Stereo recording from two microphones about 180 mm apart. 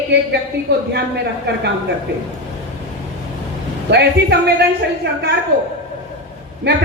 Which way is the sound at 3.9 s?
65° right (ahead or behind).